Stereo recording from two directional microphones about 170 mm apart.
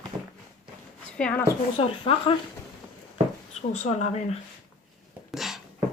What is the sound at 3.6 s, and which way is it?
Speech, 40° left (ahead or behind).